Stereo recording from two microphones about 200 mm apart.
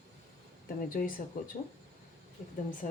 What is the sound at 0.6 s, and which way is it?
Speech, 45° left (ahead or behind).